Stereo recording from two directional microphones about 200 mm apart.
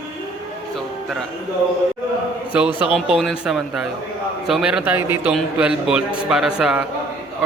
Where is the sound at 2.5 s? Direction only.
5° right (ahead or behind).